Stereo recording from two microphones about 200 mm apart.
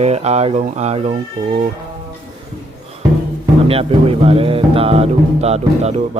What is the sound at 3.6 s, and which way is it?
Speech, 30° right (ahead or behind).